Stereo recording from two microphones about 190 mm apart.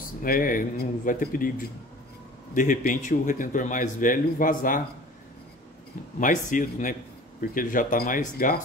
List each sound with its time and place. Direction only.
0.0 s a man's voice: 45° left (ahead or behind)
6.1 s a man's voice: 45° left (ahead or behind)